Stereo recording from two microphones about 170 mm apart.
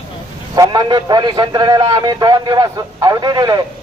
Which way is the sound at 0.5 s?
25° right (ahead or behind).